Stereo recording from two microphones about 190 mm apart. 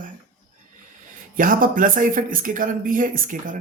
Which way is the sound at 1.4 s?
45° right (ahead or behind).